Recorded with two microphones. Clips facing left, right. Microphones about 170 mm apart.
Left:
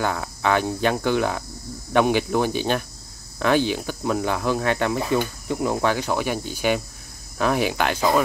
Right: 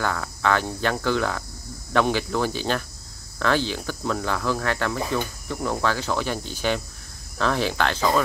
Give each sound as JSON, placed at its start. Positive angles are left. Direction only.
{"t": 0.0, "sound": "speech", "side_deg": 20}